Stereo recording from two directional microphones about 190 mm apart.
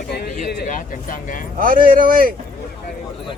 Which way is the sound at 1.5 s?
45° right (ahead or behind).